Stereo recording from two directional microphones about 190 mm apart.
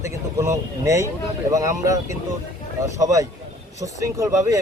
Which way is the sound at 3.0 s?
15° right (ahead or behind).